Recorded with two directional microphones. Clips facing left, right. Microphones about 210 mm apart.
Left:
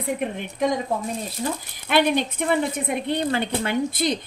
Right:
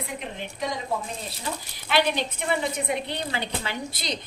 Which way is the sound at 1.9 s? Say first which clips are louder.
Left 4 dB; 50° left (ahead or behind).